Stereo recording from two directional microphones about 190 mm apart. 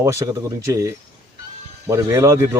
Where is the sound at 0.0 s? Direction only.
15° right (ahead or behind).